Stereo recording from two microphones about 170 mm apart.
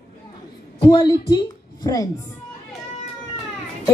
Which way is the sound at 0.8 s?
30° left (ahead or behind).